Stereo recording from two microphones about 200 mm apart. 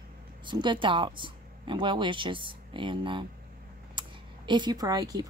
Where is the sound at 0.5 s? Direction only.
25° right (ahead or behind).